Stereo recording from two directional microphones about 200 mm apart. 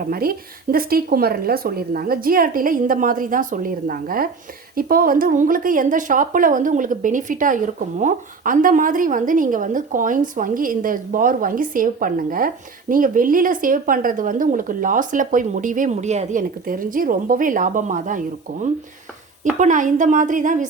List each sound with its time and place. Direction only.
0.0 s speech: 45° right (ahead or behind)
19.5 s a woman's voice: 40° right (ahead or behind)